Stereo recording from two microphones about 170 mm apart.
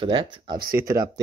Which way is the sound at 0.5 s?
60° right (ahead or behind).